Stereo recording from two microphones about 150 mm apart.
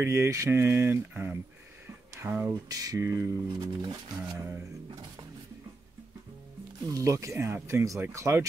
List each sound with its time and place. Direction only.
0.0 s speech: 15° right (ahead or behind)
6.9 s speech: 20° right (ahead or behind)